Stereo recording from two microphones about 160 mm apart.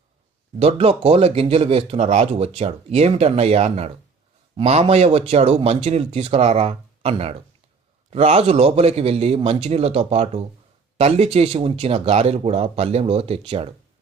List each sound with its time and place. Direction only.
0.6 s speech: 40° right (ahead or behind)